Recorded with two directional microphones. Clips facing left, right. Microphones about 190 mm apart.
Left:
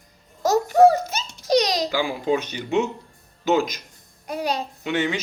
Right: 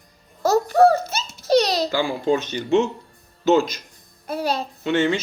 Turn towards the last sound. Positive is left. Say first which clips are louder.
# right 4 dB
turn(degrees=10)  # may be behind; listen again after turning